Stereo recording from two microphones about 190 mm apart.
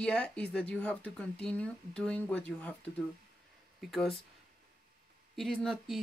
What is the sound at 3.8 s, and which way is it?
Speech, centre (ahead or behind).